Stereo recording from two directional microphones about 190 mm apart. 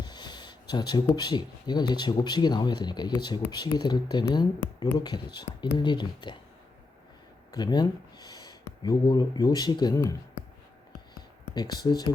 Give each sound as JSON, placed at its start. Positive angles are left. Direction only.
{"t": 0.0, "sound": "a sound", "side_deg": 20}
{"t": 1.1, "sound": "speech", "side_deg": 20}
{"t": 7.5, "sound": "speech", "side_deg": 20}
{"t": 11.5, "sound": "speech", "side_deg": 20}